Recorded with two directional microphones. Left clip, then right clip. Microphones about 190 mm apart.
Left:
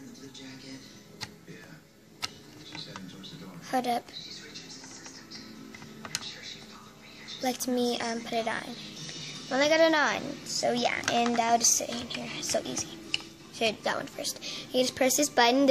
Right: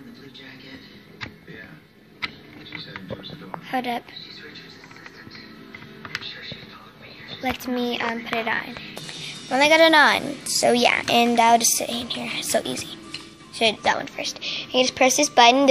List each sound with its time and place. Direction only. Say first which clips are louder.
3.6 s a woman's voice: right 2 dB; 20° left (ahead or behind)
7.4 s a woman's voice: right 3 dB; 25° left (ahead or behind)
9.2 s a woman's voice: right 8 dB; 10° right (ahead or behind)
13.6 s a woman's voice: right 8 dB; centre (ahead or behind)